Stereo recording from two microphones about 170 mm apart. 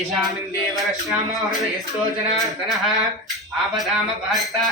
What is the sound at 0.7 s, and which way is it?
Speech, centre (ahead or behind).